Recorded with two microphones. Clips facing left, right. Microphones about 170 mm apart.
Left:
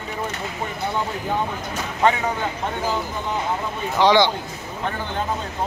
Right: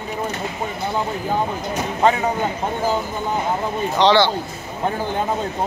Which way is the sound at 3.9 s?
15° left (ahead or behind).